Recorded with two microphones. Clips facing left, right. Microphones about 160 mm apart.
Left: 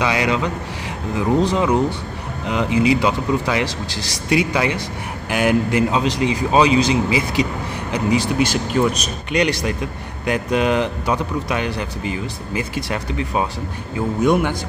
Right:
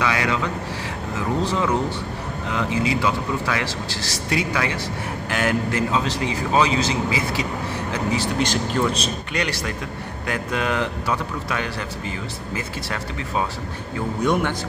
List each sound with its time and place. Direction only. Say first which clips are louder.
0.0 s a man's voice: left 3 dB; 20° left (ahead or behind)